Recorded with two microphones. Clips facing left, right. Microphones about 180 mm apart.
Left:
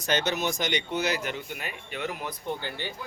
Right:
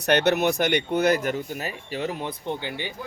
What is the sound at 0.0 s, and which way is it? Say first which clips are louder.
Speech: right 7 dB; 65° right (ahead or behind).